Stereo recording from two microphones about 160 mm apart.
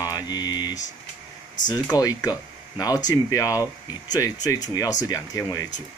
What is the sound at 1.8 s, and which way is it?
Speech, 20° left (ahead or behind).